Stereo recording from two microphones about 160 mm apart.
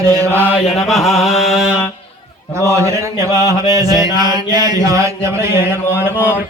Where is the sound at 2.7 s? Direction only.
20° right (ahead or behind).